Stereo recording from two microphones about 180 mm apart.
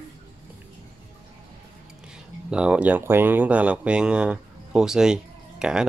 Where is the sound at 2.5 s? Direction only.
5° right (ahead or behind).